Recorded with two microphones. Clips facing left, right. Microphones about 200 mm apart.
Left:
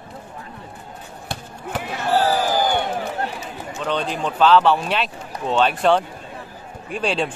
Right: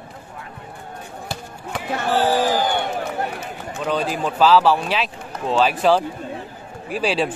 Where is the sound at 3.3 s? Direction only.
55° right (ahead or behind).